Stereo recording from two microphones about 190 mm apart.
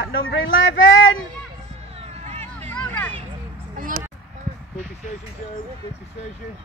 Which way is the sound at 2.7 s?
5° left (ahead or behind).